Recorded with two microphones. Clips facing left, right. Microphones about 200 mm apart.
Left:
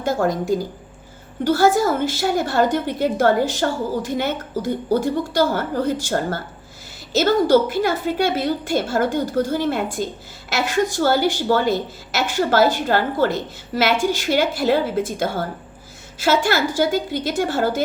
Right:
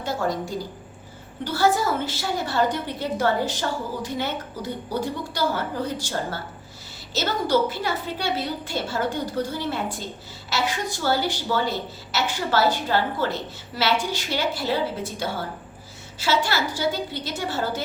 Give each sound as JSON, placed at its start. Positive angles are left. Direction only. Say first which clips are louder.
{"t": 0.0, "sound": "a woman's voice", "louder": "left 6 dB", "side_deg": 50}
{"t": 1.5, "sound": "a woman's voice", "louder": "left 6 dB", "side_deg": 45}